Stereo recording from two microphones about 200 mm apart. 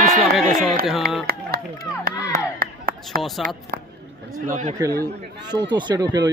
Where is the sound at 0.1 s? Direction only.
Centre (ahead or behind).